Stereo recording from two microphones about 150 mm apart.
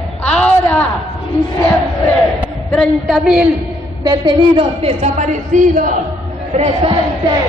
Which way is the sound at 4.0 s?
30° right (ahead or behind).